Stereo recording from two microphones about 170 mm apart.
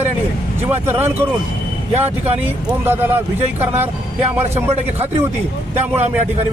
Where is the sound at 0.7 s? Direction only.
15° right (ahead or behind).